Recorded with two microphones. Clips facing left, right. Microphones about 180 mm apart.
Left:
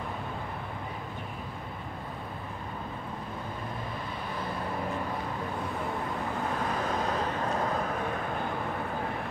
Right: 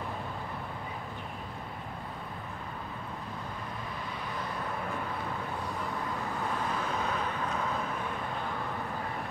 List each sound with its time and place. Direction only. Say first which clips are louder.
7.1 s vehicle: left 3 dB; 35° left (ahead or behind)